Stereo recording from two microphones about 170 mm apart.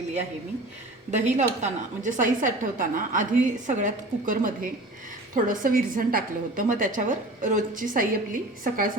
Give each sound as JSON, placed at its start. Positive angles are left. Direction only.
{"t": 1.1, "sound": "a woman's voice", "side_deg": -45}